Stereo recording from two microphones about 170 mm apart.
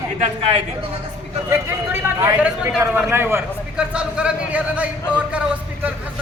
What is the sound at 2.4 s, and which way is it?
A man's voice, 5° right (ahead or behind).